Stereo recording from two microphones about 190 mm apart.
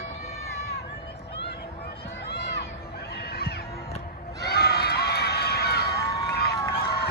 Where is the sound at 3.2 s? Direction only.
55° left (ahead or behind).